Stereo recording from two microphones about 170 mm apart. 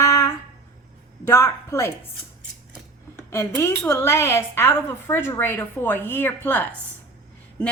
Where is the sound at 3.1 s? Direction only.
15° left (ahead or behind).